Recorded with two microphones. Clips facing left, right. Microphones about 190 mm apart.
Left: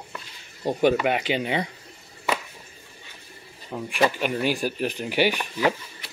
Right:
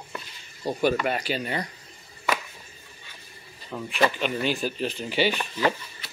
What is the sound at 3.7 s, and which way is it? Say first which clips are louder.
Speech: left 1 dB; 15° left (ahead or behind).